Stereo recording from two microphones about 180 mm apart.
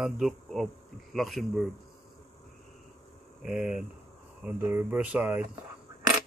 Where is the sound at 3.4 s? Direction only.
5° right (ahead or behind).